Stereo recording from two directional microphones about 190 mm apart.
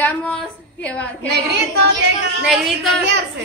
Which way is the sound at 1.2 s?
60° right (ahead or behind).